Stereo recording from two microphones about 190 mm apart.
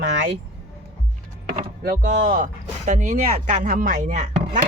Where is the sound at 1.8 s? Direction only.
50° right (ahead or behind).